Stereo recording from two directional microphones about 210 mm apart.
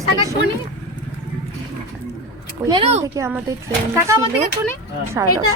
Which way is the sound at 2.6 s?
25° right (ahead or behind).